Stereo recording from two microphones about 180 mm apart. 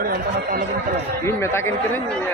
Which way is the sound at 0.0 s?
55° right (ahead or behind).